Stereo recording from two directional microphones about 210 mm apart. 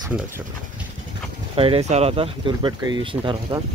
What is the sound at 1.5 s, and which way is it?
Speech, 25° right (ahead or behind).